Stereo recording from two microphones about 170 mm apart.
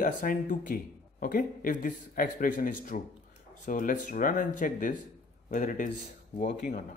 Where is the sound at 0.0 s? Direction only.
55° left (ahead or behind).